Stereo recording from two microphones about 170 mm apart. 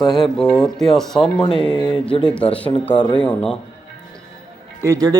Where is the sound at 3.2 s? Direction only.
5° left (ahead or behind).